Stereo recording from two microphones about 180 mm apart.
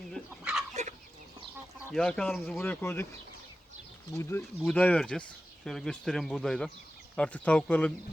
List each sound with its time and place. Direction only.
0.3 s fowl: 5° right (ahead or behind)
0.7 s dog: 40° right (ahead or behind)
1.9 s speech: 5° left (ahead or behind)
4.1 s speech: 15° left (ahead or behind)